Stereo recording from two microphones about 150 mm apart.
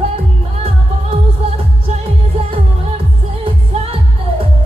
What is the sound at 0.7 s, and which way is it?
Music, 40° right (ahead or behind).